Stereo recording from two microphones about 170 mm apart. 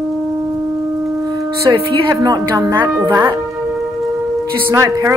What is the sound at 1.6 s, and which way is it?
Speech, 20° right (ahead or behind).